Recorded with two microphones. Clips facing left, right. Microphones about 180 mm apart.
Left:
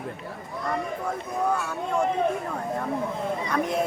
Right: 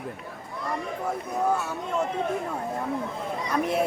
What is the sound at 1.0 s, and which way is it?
Speech, 5° right (ahead or behind).